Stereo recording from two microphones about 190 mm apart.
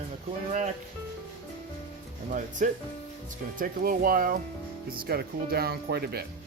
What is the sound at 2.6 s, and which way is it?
Speech, 40° right (ahead or behind).